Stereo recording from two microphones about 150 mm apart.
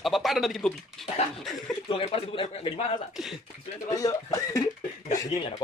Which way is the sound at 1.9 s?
40° left (ahead or behind).